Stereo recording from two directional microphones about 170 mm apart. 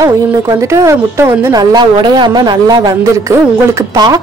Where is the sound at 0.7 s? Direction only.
15° right (ahead or behind).